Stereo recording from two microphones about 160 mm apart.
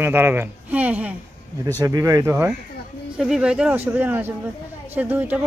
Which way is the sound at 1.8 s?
20° right (ahead or behind).